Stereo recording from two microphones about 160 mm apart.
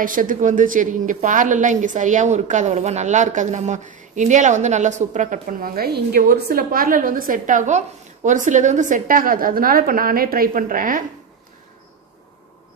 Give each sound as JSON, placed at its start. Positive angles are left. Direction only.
{"t": 0.0, "sound": "a woman's voice", "side_deg": -55}